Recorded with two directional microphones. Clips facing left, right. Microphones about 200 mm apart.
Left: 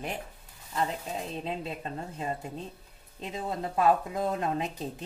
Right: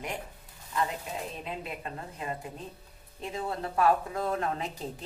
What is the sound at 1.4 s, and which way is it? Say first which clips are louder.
Speech: left 3 dB; 30° left (ahead or behind).